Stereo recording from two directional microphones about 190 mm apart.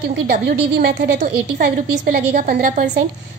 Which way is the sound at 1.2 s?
45° right (ahead or behind).